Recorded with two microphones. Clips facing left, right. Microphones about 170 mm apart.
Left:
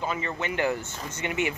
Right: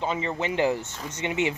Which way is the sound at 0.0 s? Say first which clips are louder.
Right 3 dB; 25° right (ahead or behind).